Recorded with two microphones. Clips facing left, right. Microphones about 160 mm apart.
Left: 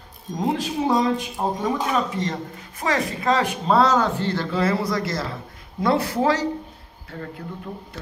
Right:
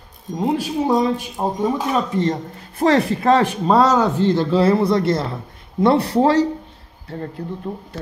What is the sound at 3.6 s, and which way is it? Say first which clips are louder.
Speech: right 2 dB; 15° right (ahead or behind).